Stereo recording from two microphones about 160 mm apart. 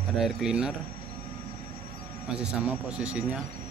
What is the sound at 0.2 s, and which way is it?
Speech, 5° right (ahead or behind).